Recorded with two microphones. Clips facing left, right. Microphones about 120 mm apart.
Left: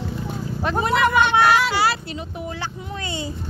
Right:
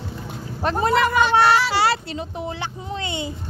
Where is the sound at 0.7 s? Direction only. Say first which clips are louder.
Even; 40° right (ahead or behind); by 3.3 s 20° right (ahead or behind).